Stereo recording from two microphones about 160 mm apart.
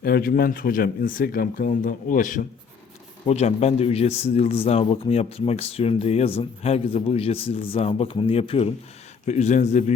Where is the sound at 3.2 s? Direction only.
45° left (ahead or behind).